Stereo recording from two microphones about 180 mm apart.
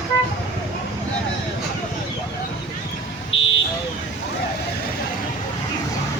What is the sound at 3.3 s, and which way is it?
Vehicle, 90° left.